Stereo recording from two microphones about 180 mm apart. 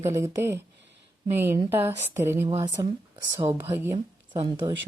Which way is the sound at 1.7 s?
10° right (ahead or behind).